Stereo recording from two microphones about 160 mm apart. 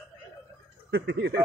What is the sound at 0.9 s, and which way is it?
Speech, 90° right.